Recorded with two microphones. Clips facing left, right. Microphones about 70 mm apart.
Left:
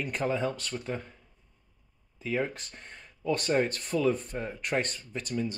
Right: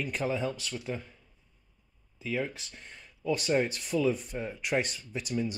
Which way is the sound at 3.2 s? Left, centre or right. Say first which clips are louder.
Left 1 dB; centre.